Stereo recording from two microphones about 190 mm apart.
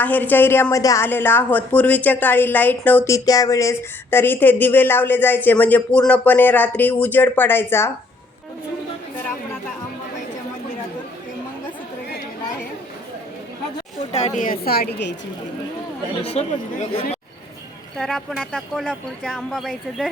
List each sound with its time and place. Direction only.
0.0 s a woman's voice: 10° left (ahead or behind)
14.1 s a woman's voice: 35° left (ahead or behind); by 15.1 s 60° left (ahead or behind)
16.4 s a woman's voice: 35° left (ahead or behind)
17.9 s speech: 5° left (ahead or behind)